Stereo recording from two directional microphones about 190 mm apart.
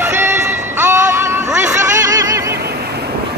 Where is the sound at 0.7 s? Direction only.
15° right (ahead or behind).